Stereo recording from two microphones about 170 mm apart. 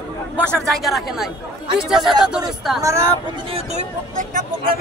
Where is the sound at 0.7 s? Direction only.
Centre (ahead or behind).